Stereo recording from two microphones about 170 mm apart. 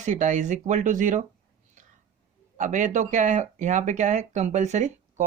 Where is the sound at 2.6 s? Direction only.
45° right (ahead or behind).